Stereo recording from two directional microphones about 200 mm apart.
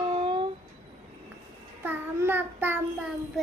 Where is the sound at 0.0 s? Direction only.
25° right (ahead or behind).